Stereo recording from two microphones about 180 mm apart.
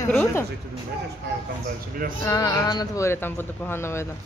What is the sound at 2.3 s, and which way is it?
Speech, 20° left (ahead or behind).